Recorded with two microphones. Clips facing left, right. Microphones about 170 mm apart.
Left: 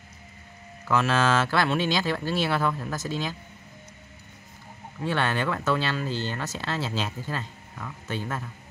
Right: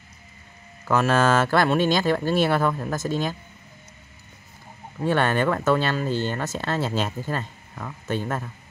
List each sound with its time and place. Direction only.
0.8 s speech: 50° right (ahead or behind)
5.0 s speech: 50° right (ahead or behind)